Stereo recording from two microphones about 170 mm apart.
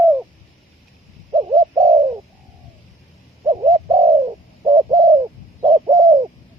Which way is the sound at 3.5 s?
20° right (ahead or behind).